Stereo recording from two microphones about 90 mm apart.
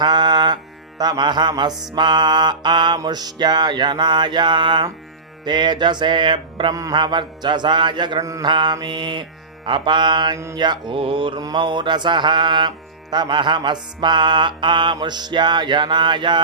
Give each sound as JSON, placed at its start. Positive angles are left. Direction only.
{"t": 0.0, "sound": "music", "side_deg": -55}
{"t": 8.2, "sound": "mantra", "side_deg": -40}
{"t": 8.4, "sound": "music", "side_deg": -60}
{"t": 10.3, "sound": "mantra", "side_deg": -35}
{"t": 10.6, "sound": "mantra", "side_deg": -60}
{"t": 11.3, "sound": "music", "side_deg": -55}
{"t": 14.9, "sound": "music", "side_deg": -55}